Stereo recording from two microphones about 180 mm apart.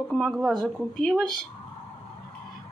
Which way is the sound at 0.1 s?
5° left (ahead or behind).